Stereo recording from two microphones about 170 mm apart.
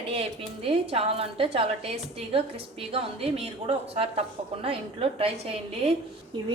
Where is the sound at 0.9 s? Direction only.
35° right (ahead or behind).